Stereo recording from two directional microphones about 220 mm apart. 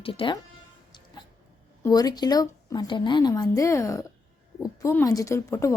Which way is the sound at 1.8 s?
15° left (ahead or behind).